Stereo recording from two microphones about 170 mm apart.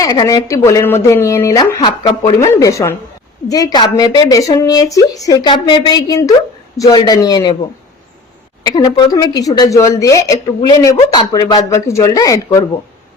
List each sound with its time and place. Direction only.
0.0 s speech: 20° left (ahead or behind)
8.6 s speech: 25° left (ahead or behind)